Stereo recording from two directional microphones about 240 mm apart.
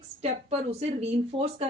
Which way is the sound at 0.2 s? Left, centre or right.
Right.